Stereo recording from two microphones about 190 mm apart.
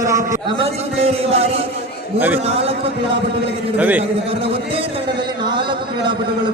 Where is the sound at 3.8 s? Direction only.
10° right (ahead or behind).